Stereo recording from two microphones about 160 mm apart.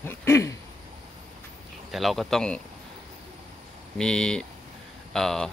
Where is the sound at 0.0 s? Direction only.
15° left (ahead or behind).